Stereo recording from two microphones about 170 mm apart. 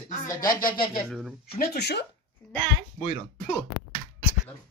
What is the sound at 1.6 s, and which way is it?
Speech, 75° left (ahead or behind).